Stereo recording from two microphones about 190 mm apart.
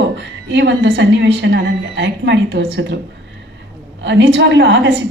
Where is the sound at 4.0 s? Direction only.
65° right (ahead or behind).